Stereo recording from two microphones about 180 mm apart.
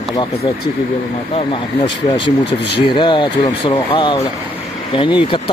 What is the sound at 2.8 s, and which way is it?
Speech, 25° left (ahead or behind).